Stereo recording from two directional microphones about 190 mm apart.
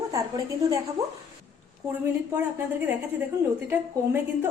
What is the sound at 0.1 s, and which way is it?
A woman's voice, 15° right (ahead or behind).